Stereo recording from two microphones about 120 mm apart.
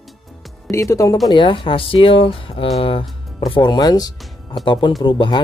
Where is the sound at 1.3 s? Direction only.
45° left (ahead or behind).